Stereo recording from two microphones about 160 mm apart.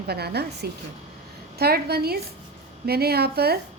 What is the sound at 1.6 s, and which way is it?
A woman's voice, 80° right.